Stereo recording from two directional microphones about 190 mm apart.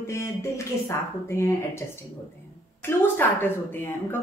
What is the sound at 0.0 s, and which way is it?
A woman's voice, 15° left (ahead or behind).